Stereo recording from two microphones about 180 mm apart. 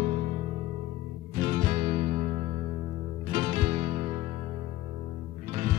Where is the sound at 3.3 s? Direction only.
40° right (ahead or behind).